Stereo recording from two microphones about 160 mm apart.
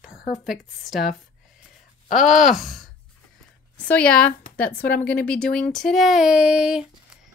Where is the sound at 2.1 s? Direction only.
Centre (ahead or behind).